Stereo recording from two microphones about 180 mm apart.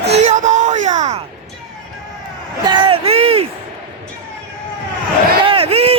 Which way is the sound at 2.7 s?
25° right (ahead or behind).